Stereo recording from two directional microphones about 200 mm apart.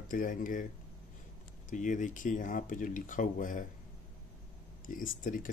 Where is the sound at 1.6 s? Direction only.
40° left (ahead or behind).